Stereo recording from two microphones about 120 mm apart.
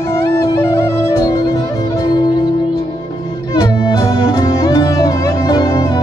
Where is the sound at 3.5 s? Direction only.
30° left (ahead or behind).